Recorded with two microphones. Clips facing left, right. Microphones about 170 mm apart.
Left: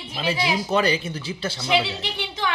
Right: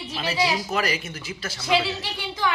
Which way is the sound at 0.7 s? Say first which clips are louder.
Left 5 dB; 30° left (ahead or behind).